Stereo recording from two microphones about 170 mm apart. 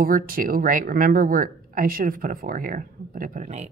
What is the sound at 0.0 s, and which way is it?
A woman's voice, 55° right (ahead or behind).